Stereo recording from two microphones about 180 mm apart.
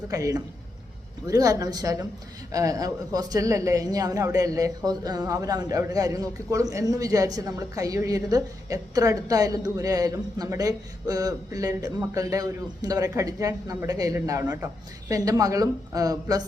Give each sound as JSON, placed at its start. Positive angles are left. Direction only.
{"t": 0.1, "sound": "a man's voice", "side_deg": -20}